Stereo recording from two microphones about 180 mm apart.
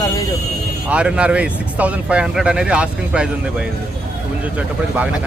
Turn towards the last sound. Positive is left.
turn(degrees=-5)  # may be behind; listen again after turning